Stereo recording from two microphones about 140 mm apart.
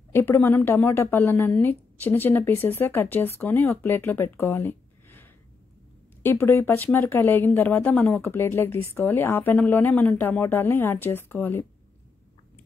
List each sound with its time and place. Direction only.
0.1 s speech: 15° left (ahead or behind)